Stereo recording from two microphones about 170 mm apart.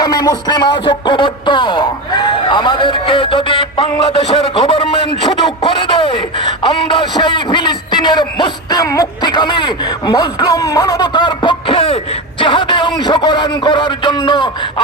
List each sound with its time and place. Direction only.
0.0 s a man's voice: 20° left (ahead or behind)